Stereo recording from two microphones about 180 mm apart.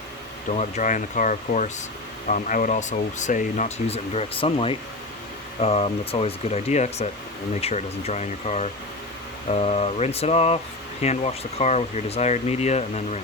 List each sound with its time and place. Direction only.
0.5 s speech: 40° left (ahead or behind)